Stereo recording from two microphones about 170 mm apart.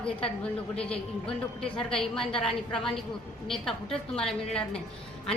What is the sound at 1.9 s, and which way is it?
Speech, 5° left (ahead or behind).